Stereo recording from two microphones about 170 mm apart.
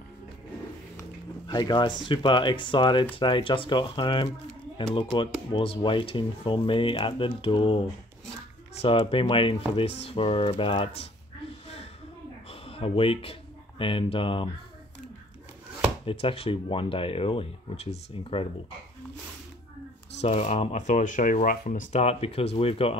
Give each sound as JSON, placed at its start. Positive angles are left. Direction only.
{"t": 1.5, "sound": "speech", "side_deg": 25}
{"t": 12.4, "sound": "speech", "side_deg": 35}
{"t": 16.1, "sound": "speech", "side_deg": 35}
{"t": 20.2, "sound": "speech", "side_deg": 40}